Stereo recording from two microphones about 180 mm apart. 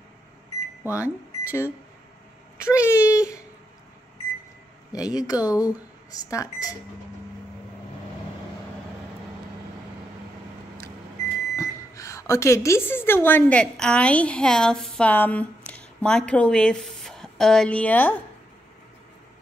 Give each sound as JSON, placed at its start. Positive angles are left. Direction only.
{"t": 0.9, "sound": "speech", "side_deg": 15}
{"t": 4.9, "sound": "speech", "side_deg": 20}
{"t": 11.5, "sound": "speech", "side_deg": 15}